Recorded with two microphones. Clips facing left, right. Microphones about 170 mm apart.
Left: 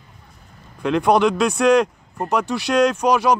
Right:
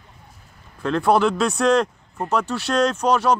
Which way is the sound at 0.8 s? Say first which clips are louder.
Left 2 dB; 15° left (ahead or behind).